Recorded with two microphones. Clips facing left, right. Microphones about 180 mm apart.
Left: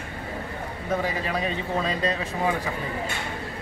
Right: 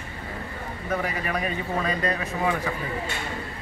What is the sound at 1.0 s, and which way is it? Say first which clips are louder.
Speech: left 1 dB; 25° left (ahead or behind).